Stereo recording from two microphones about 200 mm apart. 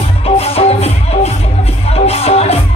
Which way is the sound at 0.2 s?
30° left (ahead or behind).